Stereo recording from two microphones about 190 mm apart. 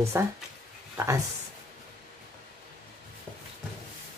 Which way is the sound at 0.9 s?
15° right (ahead or behind).